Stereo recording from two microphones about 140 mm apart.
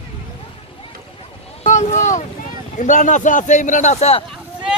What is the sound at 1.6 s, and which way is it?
A man's voice, 60° left (ahead or behind).